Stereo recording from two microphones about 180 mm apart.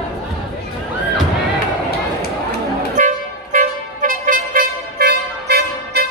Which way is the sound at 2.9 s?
50° right (ahead or behind).